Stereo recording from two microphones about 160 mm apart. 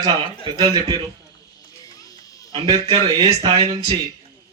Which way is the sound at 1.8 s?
20° left (ahead or behind).